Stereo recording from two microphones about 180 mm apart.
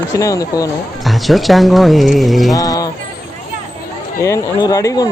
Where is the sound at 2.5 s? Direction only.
20° left (ahead or behind).